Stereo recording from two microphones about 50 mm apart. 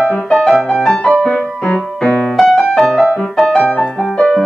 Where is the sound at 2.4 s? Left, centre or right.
Centre.